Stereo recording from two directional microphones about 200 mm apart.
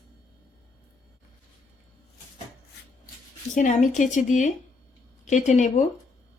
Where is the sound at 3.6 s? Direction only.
40° left (ahead or behind).